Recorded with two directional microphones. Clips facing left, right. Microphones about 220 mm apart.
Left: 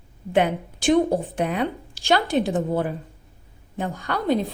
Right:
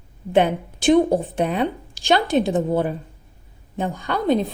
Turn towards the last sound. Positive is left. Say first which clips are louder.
# right 3 dB
turn(degrees=-20)  # may be behind; listen again after turning